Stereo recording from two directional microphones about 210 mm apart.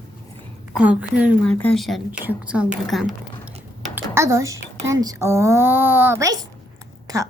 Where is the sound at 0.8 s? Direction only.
5° right (ahead or behind).